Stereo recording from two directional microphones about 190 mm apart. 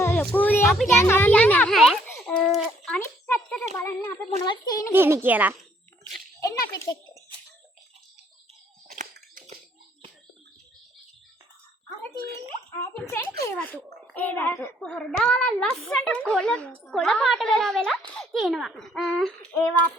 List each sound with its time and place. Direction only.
0.0 s a child's voice: 5° left (ahead or behind)
0.9 s a child's voice: 10° left (ahead or behind)
2.0 s a sound: 10° left (ahead or behind)
3.8 s a child's voice: 10° left (ahead or behind)
4.4 s a child's voice: 25° left (ahead or behind)
4.9 s a child's voice: 10° right (ahead or behind)
6.4 s a child's voice: 15° left (ahead or behind)
8.9 s a sound: 50° right (ahead or behind)
12.7 s a child's voice: 15° left (ahead or behind)